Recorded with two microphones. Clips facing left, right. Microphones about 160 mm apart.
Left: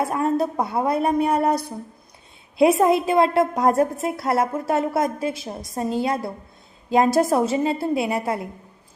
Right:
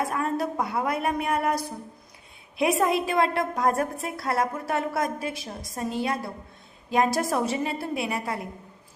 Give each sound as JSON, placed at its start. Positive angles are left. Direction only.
{"t": 0.1, "sound": "a woman's voice", "side_deg": 25}
{"t": 2.6, "sound": "a woman's voice", "side_deg": 30}